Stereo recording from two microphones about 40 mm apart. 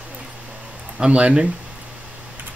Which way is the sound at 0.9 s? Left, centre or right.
Right.